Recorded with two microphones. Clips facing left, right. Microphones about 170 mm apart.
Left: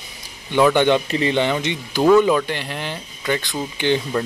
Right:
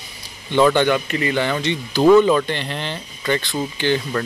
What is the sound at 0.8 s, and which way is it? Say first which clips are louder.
Speech: left 2 dB; 25° left (ahead or behind).